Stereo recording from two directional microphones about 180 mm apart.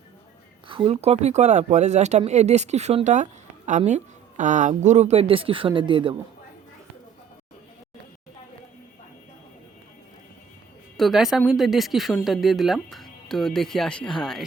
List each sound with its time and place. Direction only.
0.7 s speech: 30° right (ahead or behind)
10.9 s speech: centre (ahead or behind)